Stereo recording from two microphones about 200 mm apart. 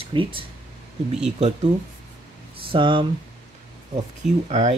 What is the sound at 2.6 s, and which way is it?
Speech, 25° right (ahead or behind).